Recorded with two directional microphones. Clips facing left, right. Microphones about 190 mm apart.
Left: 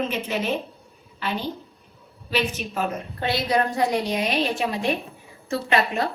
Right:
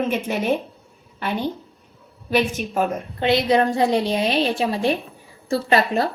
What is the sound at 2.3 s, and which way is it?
Speech, 50° right (ahead or behind).